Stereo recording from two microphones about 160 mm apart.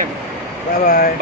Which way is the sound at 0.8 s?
65° left (ahead or behind).